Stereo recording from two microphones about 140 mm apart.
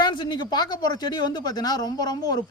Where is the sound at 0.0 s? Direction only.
30° left (ahead or behind).